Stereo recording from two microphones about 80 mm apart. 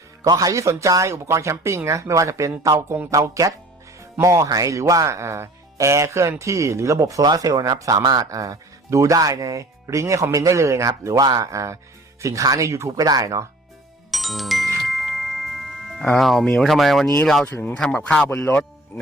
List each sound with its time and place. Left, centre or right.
0.3 s speech: right
14.1 s music: centre
16.1 s speech: centre
17.9 s speech: centre